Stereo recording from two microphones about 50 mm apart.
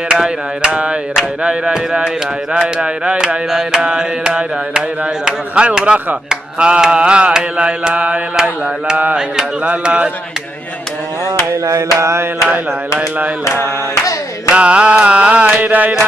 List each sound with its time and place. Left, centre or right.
0.1 s mantra: centre
9.7 s mantra: right
11.6 s a sound: right
14.5 s mantra: right